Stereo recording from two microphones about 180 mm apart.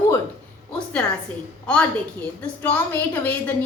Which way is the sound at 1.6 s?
5° left (ahead or behind).